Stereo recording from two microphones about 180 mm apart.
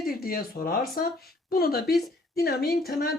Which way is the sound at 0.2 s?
55° left (ahead or behind).